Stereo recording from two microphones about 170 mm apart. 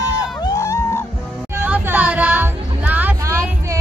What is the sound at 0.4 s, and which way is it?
Music, 20° left (ahead or behind).